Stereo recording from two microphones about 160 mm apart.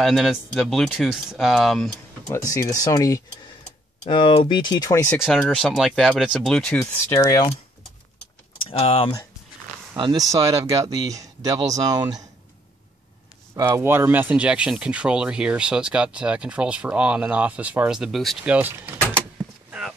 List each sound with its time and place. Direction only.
0.0 s speech: centre (ahead or behind)
2.2 s speech: 20° left (ahead or behind)
4.1 s speech: 35° left (ahead or behind)
5.1 s speech: 5° left (ahead or behind); by 7.5 s 25° left (ahead or behind)
8.6 s speech: 35° left (ahead or behind)
9.9 s speech: 30° right (ahead or behind)
13.6 s speech: 15° right (ahead or behind)